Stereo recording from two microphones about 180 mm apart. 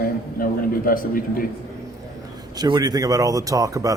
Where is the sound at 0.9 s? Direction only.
50° left (ahead or behind).